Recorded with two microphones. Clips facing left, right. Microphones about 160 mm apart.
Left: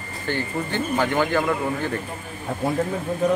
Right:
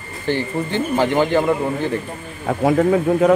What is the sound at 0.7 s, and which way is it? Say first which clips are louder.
Speech: right 5 dB; 20° right (ahead or behind).